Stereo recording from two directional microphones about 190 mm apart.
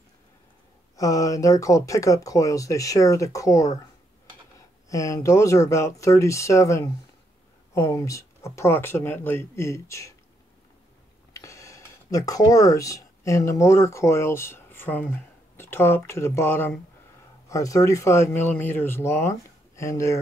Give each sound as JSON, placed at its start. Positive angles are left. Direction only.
{"t": 0.9, "sound": "speech", "side_deg": 15}
{"t": 11.3, "sound": "speech", "side_deg": 15}